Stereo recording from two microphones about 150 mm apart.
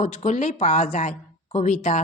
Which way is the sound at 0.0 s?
50° left (ahead or behind).